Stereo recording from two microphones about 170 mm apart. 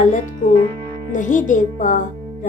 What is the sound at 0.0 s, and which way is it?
Music, 50° left (ahead or behind).